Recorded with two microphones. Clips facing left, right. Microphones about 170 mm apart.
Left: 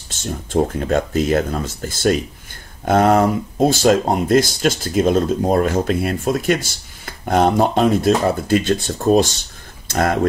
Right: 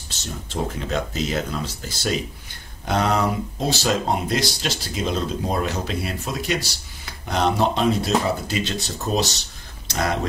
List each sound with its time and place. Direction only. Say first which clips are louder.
0.1 s speech: left 10 dB; 50° left (ahead or behind)